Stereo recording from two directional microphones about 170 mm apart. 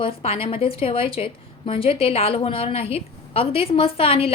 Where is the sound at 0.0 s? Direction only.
35° left (ahead or behind).